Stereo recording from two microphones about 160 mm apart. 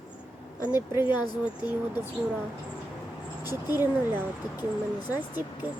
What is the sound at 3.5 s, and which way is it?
Speech, 15° right (ahead or behind).